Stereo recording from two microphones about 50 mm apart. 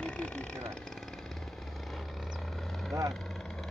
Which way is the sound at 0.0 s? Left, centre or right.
Centre.